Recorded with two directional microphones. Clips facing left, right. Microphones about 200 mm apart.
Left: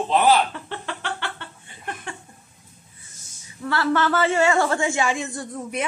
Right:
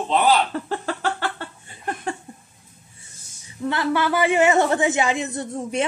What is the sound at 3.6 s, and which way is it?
A woman's voice, 20° right (ahead or behind).